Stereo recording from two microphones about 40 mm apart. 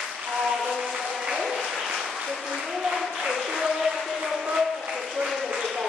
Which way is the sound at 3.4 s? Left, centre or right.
Centre.